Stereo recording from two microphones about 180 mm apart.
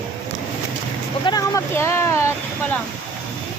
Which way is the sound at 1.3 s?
20° left (ahead or behind).